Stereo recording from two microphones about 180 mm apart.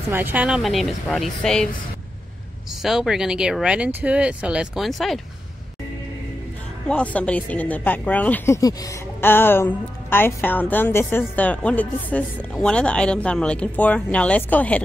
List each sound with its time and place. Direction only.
0.1 s speech: 10° right (ahead or behind)
2.8 s speech: centre (ahead or behind)
6.9 s a woman's voice: 5° left (ahead or behind)